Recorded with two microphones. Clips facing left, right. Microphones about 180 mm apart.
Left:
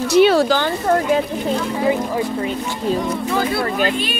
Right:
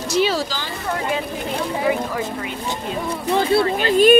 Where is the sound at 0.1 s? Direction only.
60° left (ahead or behind).